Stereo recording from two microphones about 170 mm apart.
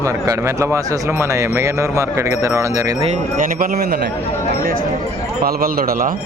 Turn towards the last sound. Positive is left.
turn(degrees=-55)  # may be behind; listen again after turning